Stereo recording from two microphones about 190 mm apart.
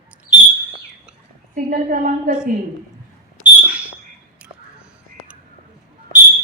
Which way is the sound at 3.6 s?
5° right (ahead or behind).